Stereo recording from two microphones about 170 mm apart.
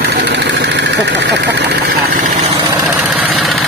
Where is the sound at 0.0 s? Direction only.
85° right.